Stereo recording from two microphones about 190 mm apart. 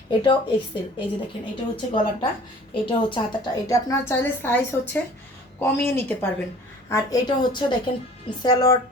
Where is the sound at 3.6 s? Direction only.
15° left (ahead or behind).